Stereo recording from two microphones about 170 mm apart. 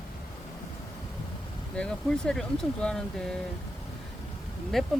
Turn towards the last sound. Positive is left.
turn(degrees=0)  # may be behind; listen again after turning